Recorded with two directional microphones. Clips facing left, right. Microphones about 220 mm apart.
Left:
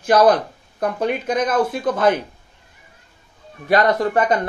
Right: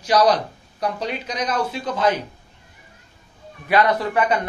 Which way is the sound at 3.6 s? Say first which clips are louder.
Left 2 dB; 45° left (ahead or behind).